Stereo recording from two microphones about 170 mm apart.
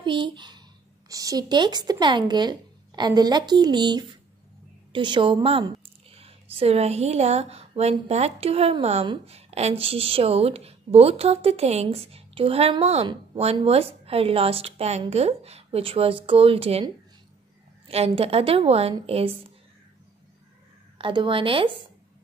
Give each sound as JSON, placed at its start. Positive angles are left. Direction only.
{"t": 0.0, "sound": "speech", "side_deg": -30}
{"t": 4.9, "sound": "a sound", "side_deg": -30}
{"t": 6.5, "sound": "a woman's voice", "side_deg": -35}
{"t": 17.8, "sound": "a woman's voice", "side_deg": -35}
{"t": 21.0, "sound": "speech", "side_deg": -30}